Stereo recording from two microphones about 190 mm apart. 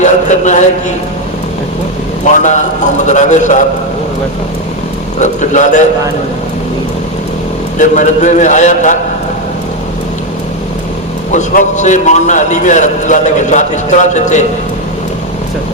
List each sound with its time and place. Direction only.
0.0 s a man's voice: 40° left (ahead or behind)
2.2 s a man's voice: 40° left (ahead or behind)
5.2 s a man's voice: 40° left (ahead or behind)
7.8 s a man's voice: 40° left (ahead or behind)
11.3 s a man's voice: 40° left (ahead or behind)